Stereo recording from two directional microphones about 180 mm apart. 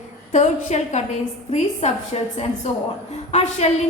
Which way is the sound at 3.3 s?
35° left (ahead or behind).